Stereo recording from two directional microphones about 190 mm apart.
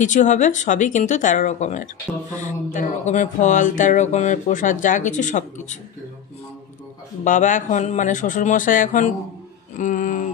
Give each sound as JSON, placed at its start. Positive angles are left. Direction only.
{"t": 0.0, "sound": "speech", "side_deg": 40}
{"t": 7.2, "sound": "speech", "side_deg": 40}
{"t": 9.8, "sound": "a sound", "side_deg": 45}